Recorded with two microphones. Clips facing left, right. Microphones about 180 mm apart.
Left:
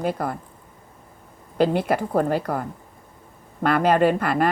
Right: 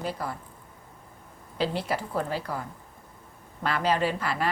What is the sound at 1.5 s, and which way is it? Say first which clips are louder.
A woman's voice: left 8 dB; 55° left (ahead or behind).